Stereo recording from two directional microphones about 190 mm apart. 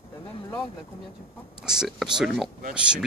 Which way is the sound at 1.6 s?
5° right (ahead or behind).